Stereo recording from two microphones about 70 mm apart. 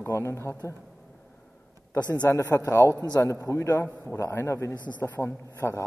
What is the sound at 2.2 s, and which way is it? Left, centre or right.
Speech, left.